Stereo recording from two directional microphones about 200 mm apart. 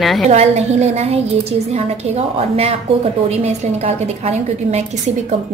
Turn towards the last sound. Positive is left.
turn(degrees=-35)  # may be behind; listen again after turning